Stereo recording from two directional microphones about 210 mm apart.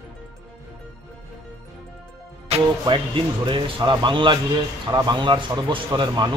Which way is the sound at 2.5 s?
30° right (ahead or behind).